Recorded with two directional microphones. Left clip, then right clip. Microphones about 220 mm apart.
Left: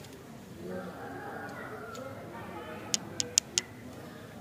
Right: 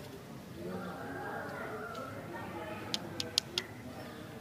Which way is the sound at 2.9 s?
20° left (ahead or behind).